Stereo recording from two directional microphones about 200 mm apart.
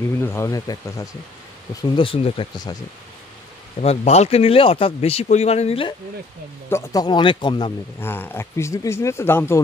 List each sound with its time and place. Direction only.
0.2 s speech: 10° left (ahead or behind)
3.8 s speech: 30° left (ahead or behind)
6.7 s speech: 15° left (ahead or behind)
8.0 s speech: 10° left (ahead or behind)